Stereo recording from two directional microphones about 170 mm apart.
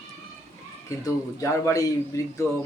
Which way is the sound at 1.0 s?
20° left (ahead or behind).